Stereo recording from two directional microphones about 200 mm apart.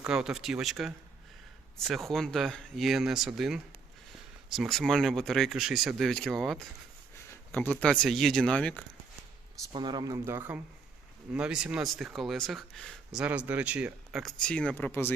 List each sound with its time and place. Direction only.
0.0 s speech: 5° right (ahead or behind)
9.7 s speech: 20° right (ahead or behind); by 15.1 s 10° left (ahead or behind)